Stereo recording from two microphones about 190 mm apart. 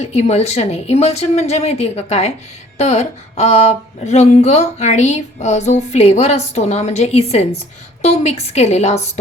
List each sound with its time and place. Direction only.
0.0 s speech: 35° left (ahead or behind)